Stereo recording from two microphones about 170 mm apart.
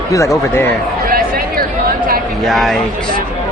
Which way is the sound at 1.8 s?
60° right (ahead or behind).